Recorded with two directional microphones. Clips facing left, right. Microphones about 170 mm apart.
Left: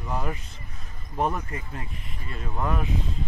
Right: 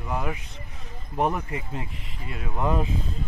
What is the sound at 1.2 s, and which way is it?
Speech, 15° right (ahead or behind).